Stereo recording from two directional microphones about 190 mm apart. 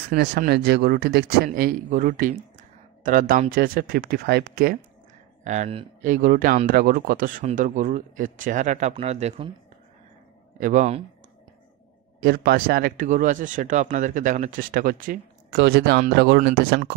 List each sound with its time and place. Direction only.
0.1 s speech: 50° right (ahead or behind)
5.4 s speech: 40° right (ahead or behind)
10.6 s speech: 40° right (ahead or behind)
12.2 s speech: 55° right (ahead or behind)